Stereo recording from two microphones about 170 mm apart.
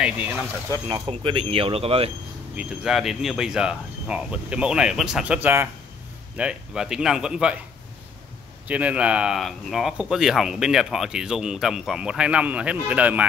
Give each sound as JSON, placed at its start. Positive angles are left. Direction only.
{"t": 0.0, "sound": "speech", "side_deg": -10}
{"t": 0.7, "sound": "speech", "side_deg": -25}
{"t": 2.5, "sound": "speech", "side_deg": -5}
{"t": 8.6, "sound": "speech", "side_deg": -10}